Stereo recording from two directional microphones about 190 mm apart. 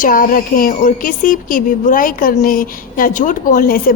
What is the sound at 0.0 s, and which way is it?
A woman's voice, 50° left (ahead or behind).